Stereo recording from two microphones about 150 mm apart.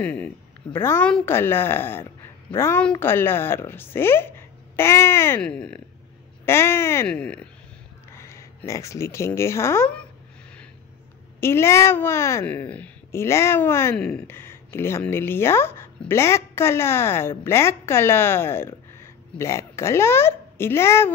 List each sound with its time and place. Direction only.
0.0 s speech: 10° left (ahead or behind)
6.4 s speech: 15° left (ahead or behind)
8.1 s speech: 20° left (ahead or behind)
11.4 s speech: 15° left (ahead or behind)
13.9 s speech: 5° left (ahead or behind)